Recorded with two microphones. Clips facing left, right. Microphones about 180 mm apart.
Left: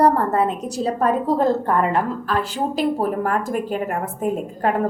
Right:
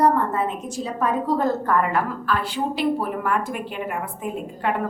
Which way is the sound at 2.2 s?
40° left (ahead or behind).